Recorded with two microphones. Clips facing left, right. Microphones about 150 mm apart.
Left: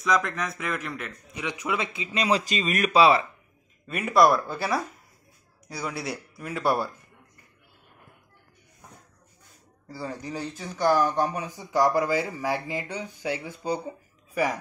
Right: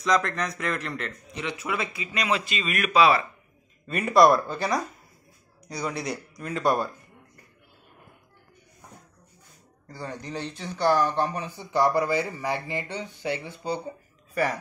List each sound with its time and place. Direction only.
0.0 s speech: 5° left (ahead or behind); by 2.2 s 20° left (ahead or behind)
2.2 s speech: 35° left (ahead or behind)
3.8 s speech: 5° left (ahead or behind)
9.8 s a man's voice: 5° left (ahead or behind)